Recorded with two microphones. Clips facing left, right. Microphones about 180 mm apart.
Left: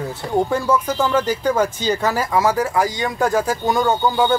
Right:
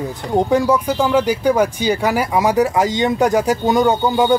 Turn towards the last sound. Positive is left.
turn(degrees=-20)  # may be behind; listen again after turning